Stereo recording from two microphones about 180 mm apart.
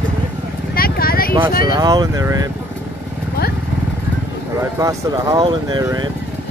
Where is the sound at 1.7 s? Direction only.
20° right (ahead or behind).